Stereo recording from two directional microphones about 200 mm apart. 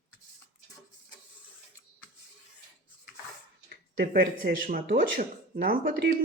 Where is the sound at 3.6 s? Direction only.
45° right (ahead or behind).